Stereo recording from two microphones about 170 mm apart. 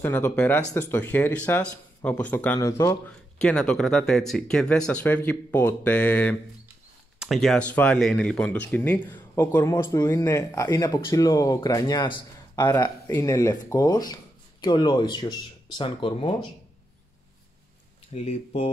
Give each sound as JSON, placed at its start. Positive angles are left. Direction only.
{"t": 0.0, "sound": "speech", "side_deg": 10}
{"t": 9.0, "sound": "a sound", "side_deg": 25}
{"t": 9.4, "sound": "speech", "side_deg": 15}
{"t": 18.1, "sound": "speech", "side_deg": 40}